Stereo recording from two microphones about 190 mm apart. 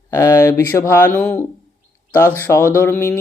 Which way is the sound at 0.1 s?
15° left (ahead or behind).